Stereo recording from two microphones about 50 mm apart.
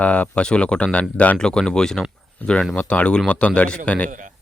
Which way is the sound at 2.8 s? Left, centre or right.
Left.